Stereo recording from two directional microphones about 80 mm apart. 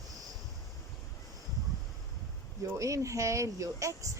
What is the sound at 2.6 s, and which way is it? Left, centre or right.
Speech, right.